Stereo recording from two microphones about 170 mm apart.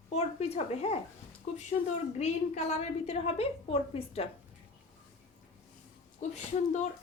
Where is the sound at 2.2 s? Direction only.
40° left (ahead or behind).